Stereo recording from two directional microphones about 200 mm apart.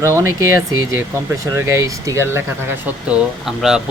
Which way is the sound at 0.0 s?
15° right (ahead or behind).